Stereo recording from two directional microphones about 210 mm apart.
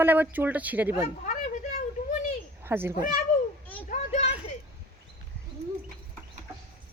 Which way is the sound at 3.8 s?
35° left (ahead or behind).